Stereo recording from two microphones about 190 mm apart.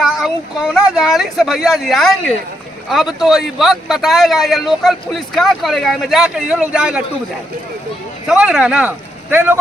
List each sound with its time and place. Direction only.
0.0 s speech: centre (ahead or behind)
8.3 s speech: 5° right (ahead or behind)